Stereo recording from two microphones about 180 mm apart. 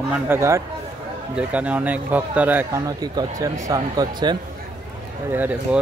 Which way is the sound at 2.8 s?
20° right (ahead or behind).